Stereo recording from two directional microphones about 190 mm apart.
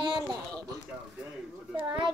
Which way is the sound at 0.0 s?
20° right (ahead or behind).